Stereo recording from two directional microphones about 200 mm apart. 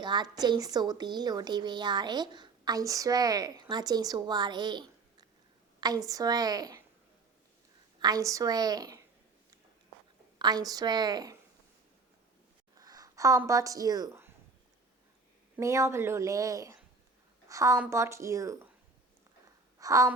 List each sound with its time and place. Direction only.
0.0 s a woman's voice: 20° right (ahead or behind)
7.9 s a woman's voice: 20° right (ahead or behind)
10.3 s a woman's voice: 20° right (ahead or behind)
12.7 s a sound: 20° right (ahead or behind)
15.5 s a woman's voice: 15° right (ahead or behind)
19.8 s a woman's voice: 15° right (ahead or behind)